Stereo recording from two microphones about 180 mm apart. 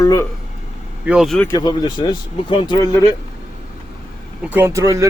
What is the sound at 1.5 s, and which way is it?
Speech, 20° left (ahead or behind).